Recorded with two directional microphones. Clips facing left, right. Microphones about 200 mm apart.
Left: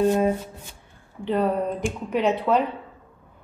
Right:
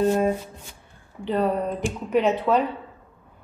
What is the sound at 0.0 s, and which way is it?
Shuffling cards, 15° left (ahead or behind).